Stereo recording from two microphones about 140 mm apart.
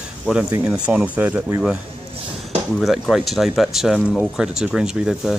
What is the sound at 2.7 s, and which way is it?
Speech, centre (ahead or behind).